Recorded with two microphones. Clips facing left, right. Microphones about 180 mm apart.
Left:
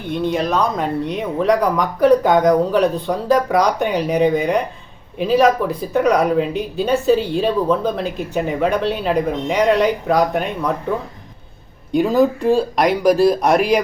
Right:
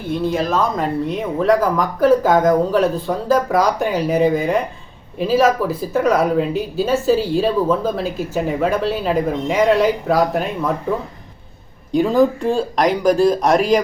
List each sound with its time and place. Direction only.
0.1 s speech: centre (ahead or behind)
11.9 s speech: centre (ahead or behind)